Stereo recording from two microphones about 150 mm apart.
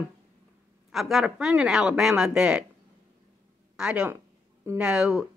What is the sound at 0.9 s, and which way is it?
Speech, centre (ahead or behind).